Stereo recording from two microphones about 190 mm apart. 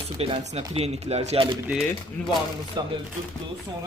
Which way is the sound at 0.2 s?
35° right (ahead or behind).